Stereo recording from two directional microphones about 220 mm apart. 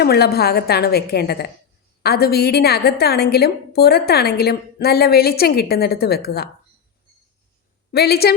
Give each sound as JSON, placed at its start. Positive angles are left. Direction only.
{"t": 0.0, "sound": "a woman's voice", "side_deg": 45}
{"t": 7.9, "sound": "a woman's voice", "side_deg": 45}